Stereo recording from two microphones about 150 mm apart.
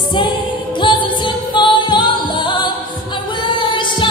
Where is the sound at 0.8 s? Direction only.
30° left (ahead or behind).